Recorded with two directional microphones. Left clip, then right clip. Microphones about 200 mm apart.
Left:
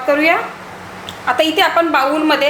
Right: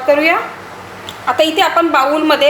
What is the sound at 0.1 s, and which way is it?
A woman's voice, centre (ahead or behind).